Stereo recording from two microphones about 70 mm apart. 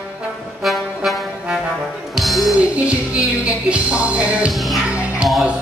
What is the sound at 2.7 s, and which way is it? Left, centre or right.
Music, centre.